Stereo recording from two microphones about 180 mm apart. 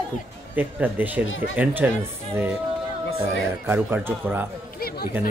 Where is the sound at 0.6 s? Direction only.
10° right (ahead or behind).